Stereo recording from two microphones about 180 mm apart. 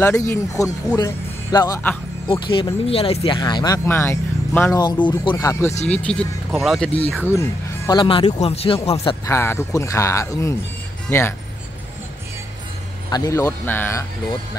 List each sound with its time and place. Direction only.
0.3 s speech: 15° left (ahead or behind)
5.9 s speech: 5° left (ahead or behind)
7.2 s speech: 15° left (ahead or behind)
8.0 s speech: 30° left (ahead or behind)
9.2 s speech: 15° left (ahead or behind)
13.1 s speech: 20° left (ahead or behind)